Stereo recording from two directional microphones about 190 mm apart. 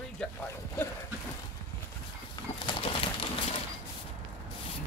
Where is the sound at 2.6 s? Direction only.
30° left (ahead or behind).